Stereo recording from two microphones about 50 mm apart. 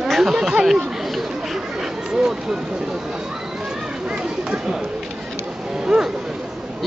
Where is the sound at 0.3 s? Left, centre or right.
Centre.